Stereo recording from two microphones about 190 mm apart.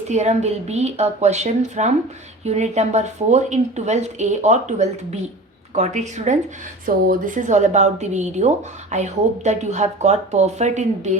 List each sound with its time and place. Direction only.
0.1 s speech: 35° right (ahead or behind)